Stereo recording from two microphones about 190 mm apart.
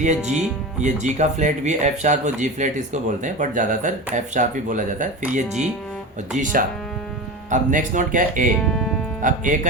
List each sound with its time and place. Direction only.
0.0 s speech: 40° right (ahead or behind)
8.6 s music: 5° left (ahead or behind)
9.2 s speech: 45° right (ahead or behind)